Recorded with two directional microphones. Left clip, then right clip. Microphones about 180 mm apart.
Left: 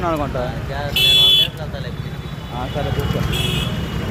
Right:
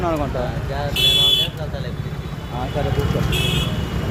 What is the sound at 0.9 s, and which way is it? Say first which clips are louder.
Speech: left 3 dB; 60° right (ahead or behind).